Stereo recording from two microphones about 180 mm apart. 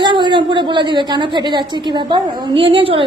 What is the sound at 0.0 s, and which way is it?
A woman's voice, 25° right (ahead or behind).